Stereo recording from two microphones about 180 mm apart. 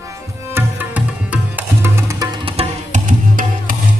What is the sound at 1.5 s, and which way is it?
Music, 15° right (ahead or behind).